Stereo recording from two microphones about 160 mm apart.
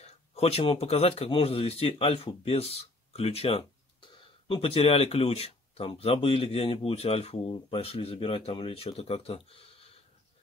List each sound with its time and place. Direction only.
0.0 s speech: 40° left (ahead or behind)